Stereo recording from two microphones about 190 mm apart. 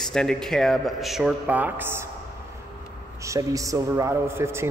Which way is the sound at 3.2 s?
15° right (ahead or behind).